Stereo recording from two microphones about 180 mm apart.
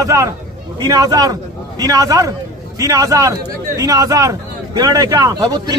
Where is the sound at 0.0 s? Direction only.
15° right (ahead or behind).